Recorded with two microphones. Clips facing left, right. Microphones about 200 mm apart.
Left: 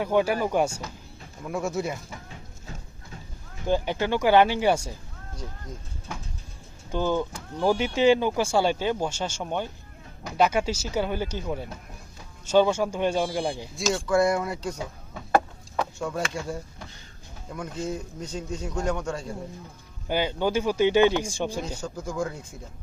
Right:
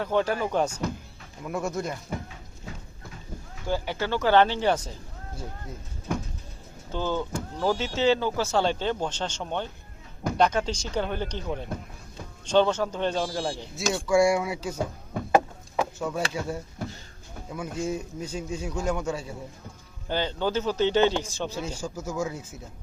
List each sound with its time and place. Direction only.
0.0 s speech: 10° left (ahead or behind)
3.7 s speech: 20° left (ahead or behind)
6.9 s speech: 15° left (ahead or behind)
13.9 s a man's voice: 10° right (ahead or behind)
14.8 s a sound: 50° right (ahead or behind)
15.7 s a sound: 5° right (ahead or behind)
17.5 s a man's voice: 10° right (ahead or behind)
20.1 s speech: 10° left (ahead or behind)
21.6 s a man's voice: 10° right (ahead or behind)